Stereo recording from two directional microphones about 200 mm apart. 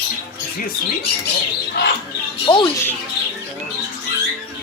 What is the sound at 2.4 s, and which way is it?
Speech, 20° left (ahead or behind).